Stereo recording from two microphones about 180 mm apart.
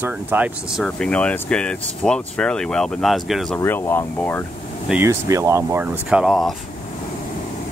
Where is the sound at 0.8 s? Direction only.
5° left (ahead or behind).